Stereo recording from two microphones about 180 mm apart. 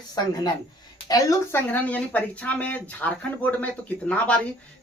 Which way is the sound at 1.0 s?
20° left (ahead or behind).